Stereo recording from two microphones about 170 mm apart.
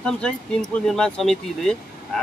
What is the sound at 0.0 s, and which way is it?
Speech, 5° left (ahead or behind).